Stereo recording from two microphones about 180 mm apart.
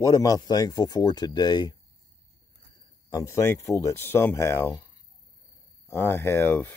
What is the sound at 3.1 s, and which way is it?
Speech, 15° left (ahead or behind).